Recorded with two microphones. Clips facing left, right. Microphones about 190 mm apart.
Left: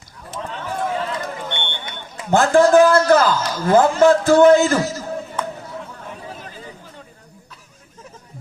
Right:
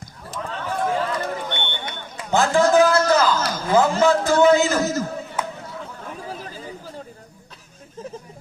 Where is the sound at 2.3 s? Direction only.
55° left (ahead or behind).